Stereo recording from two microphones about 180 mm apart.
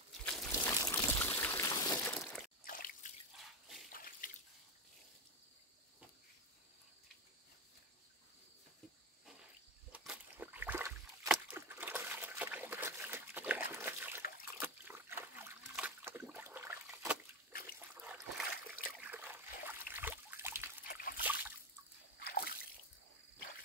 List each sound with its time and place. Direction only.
0.2 s a sound: 5° left (ahead or behind)
0.5 s a sound: 15° left (ahead or behind)
0.9 s boat: 10° left (ahead or behind)
2.6 s drip: 50° left (ahead or behind)
3.9 s water: 50° left (ahead or behind)
9.9 s rowboat: 10° right (ahead or behind)
14.6 s trickle: 10° right (ahead or behind)
15.7 s water: 10° right (ahead or behind)
17.9 s a sound: 10° right (ahead or behind)
18.7 s trickle: 10° right (ahead or behind)
20.9 s splash: 55° left (ahead or behind)
21.2 s splash: 10° right (ahead or behind)
22.2 s splash: 60° left (ahead or behind)